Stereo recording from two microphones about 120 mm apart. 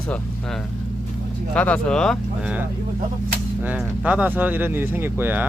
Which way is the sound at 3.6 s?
10° right (ahead or behind).